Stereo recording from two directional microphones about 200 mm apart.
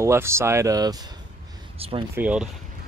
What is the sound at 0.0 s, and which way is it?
Speech, 15° right (ahead or behind).